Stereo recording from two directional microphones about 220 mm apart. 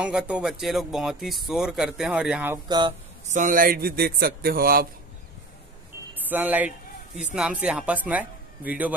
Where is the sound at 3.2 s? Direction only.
35° right (ahead or behind).